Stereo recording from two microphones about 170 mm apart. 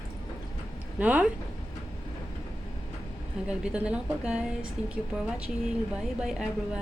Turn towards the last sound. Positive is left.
turn(degrees=-5)  # may be behind; listen again after turning